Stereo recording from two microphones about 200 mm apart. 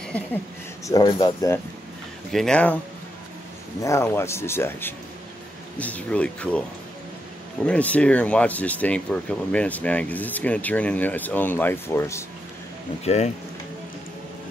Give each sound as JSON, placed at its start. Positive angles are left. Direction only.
{"t": 0.8, "sound": "speech", "side_deg": 20}
{"t": 2.3, "sound": "speech", "side_deg": 5}
{"t": 3.8, "sound": "speech", "side_deg": 15}
{"t": 7.6, "sound": "speech", "side_deg": 5}
{"t": 13.0, "sound": "speech", "side_deg": 35}